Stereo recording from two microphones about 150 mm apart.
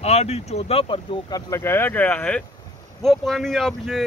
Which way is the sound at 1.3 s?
20° left (ahead or behind).